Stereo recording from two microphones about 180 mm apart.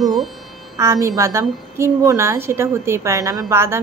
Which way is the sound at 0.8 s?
15° right (ahead or behind).